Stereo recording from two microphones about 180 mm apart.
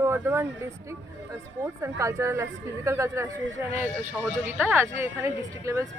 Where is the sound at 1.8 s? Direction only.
15° right (ahead or behind).